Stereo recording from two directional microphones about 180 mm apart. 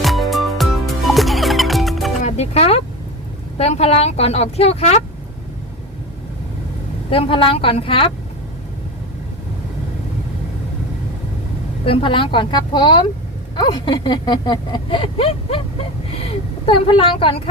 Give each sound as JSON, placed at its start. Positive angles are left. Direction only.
{"t": 0.0, "sound": "music", "side_deg": 0}
{"t": 2.2, "sound": "music", "side_deg": 35}
{"t": 3.6, "sound": "a woman's voice", "side_deg": 35}
{"t": 7.1, "sound": "speech", "side_deg": 30}
{"t": 11.9, "sound": "speech", "side_deg": 30}